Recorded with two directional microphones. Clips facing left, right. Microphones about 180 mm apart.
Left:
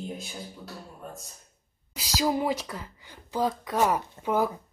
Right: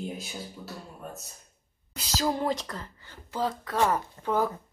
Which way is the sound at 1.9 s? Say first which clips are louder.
Left 2 dB; 10° left (ahead or behind).